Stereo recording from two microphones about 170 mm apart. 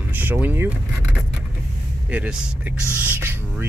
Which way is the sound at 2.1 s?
10° right (ahead or behind).